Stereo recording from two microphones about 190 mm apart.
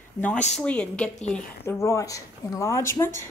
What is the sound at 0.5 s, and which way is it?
A woman's voice, 5° left (ahead or behind).